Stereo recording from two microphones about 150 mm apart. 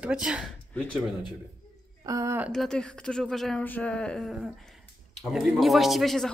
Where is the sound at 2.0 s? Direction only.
20° right (ahead or behind).